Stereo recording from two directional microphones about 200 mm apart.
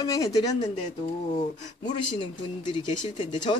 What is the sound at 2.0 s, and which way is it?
Speech, 25° left (ahead or behind).